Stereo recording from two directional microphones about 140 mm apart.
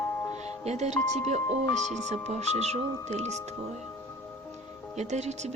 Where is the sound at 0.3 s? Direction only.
50° right (ahead or behind).